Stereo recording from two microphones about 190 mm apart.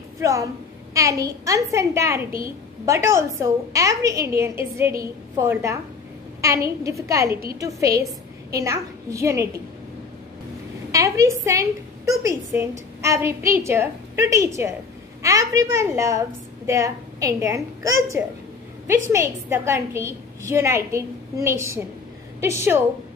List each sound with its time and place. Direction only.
0.2 s a woman's voice: 15° right (ahead or behind)
10.9 s a woman's voice: 15° right (ahead or behind)